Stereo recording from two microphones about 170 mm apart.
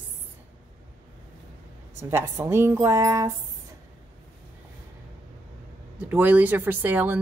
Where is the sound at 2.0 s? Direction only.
15° right (ahead or behind).